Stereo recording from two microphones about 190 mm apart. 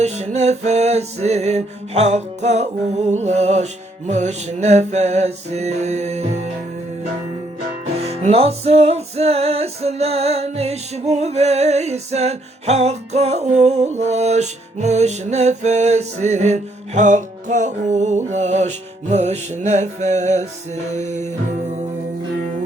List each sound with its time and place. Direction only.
0.0 s music: 35° right (ahead or behind)
7.9 s music: 35° right (ahead or behind)